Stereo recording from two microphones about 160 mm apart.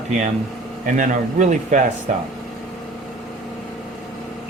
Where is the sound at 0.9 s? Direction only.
50° right (ahead or behind).